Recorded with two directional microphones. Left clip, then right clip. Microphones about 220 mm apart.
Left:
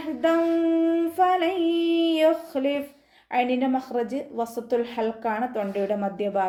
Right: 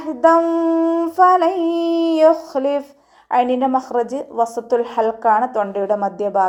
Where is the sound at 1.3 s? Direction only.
15° right (ahead or behind).